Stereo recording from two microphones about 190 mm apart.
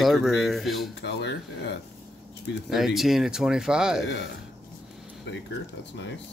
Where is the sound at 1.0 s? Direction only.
65° left (ahead or behind).